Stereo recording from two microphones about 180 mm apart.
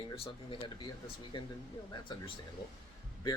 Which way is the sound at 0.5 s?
30° left (ahead or behind).